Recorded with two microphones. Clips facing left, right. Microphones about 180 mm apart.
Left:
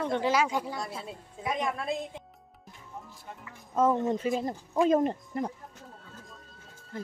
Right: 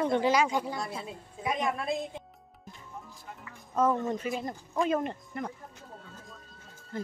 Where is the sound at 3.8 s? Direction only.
20° left (ahead or behind).